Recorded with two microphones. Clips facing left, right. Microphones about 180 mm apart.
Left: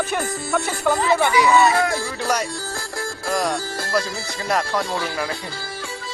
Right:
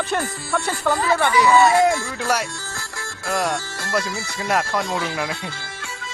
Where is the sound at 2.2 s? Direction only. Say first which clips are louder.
Even; 5° right (ahead or behind).